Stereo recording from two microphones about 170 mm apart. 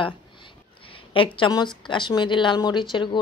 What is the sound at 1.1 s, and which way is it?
Speech, 30° left (ahead or behind).